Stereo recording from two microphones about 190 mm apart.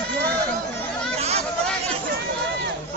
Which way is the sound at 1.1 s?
35° right (ahead or behind).